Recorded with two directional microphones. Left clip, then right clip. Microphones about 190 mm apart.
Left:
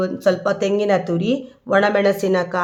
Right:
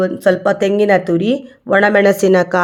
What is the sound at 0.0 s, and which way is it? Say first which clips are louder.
Speech: right 5 dB; 25° right (ahead or behind).